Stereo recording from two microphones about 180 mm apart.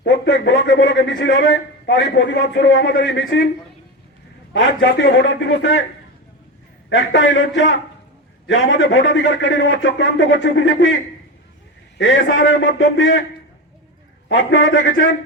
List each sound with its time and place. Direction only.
0.0 s a sound: 80° left
4.5 s a man's voice: 85° left
6.9 s a man's voice: 80° left
11.9 s a man's voice: 85° left
14.3 s a man's voice: 85° left